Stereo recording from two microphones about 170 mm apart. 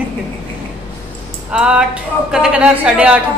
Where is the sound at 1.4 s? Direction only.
5° right (ahead or behind).